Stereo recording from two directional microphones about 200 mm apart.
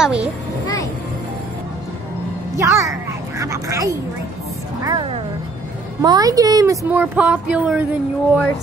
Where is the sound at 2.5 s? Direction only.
15° right (ahead or behind).